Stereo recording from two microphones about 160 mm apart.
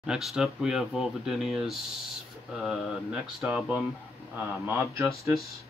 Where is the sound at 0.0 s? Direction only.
5° right (ahead or behind).